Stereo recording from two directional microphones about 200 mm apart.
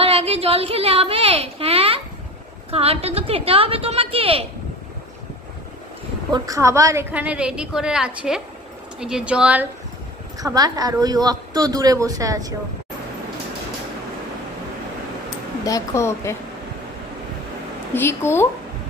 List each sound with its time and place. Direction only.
0.0 s a sound: 30° right (ahead or behind)
2.7 s a woman's voice: 30° right (ahead or behind)
6.3 s speech: 15° right (ahead or behind)
10.4 s speech: 20° right (ahead or behind)
15.6 s speech: 15° left (ahead or behind)
17.9 s speech: 10° left (ahead or behind)